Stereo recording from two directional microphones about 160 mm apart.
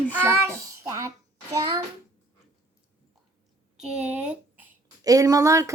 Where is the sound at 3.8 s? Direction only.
5° right (ahead or behind).